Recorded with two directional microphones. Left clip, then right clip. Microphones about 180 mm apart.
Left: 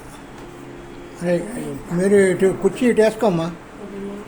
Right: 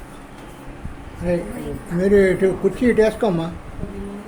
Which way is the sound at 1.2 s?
15° left (ahead or behind).